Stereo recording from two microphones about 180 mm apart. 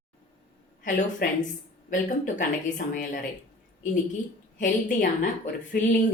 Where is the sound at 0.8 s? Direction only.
45° left (ahead or behind).